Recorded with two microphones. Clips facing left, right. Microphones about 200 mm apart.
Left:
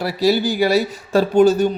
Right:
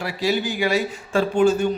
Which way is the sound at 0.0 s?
35° left (ahead or behind).